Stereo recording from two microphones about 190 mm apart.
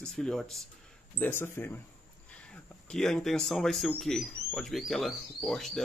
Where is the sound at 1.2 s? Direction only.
10° left (ahead or behind).